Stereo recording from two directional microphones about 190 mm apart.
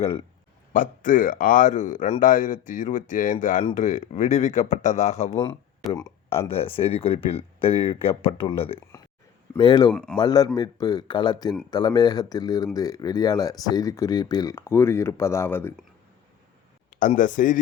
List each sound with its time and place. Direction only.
0.7 s a man's voice: 45° left (ahead or behind)
6.0 s speech: 15° left (ahead or behind)
6.6 s speech: 30° left (ahead or behind)
9.9 s a man's voice: 5° left (ahead or behind)
10.2 s speech: 20° left (ahead or behind)
16.9 s a man's voice: 45° left (ahead or behind)